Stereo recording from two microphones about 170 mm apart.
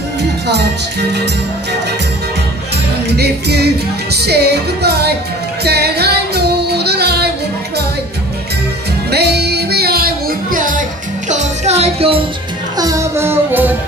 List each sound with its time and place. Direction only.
3.1 s music: 75° right (ahead or behind)
9.1 s music: 75° right (ahead or behind); by 12.2 s 35° right (ahead or behind)
12.7 s music: 20° right (ahead or behind)